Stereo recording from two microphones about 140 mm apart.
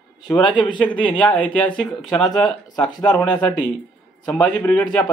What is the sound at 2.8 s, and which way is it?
Speech, 30° left (ahead or behind).